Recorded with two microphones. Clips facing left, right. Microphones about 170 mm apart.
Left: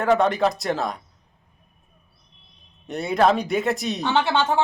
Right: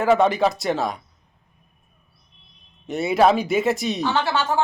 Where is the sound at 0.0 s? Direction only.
Centre (ahead or behind).